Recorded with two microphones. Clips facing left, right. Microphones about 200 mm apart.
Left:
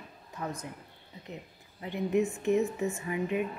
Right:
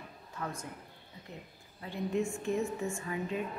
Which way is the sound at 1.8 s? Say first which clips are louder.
Left 5 dB; 20° left (ahead or behind).